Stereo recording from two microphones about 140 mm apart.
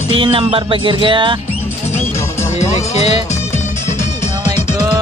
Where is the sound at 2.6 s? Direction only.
55° left (ahead or behind).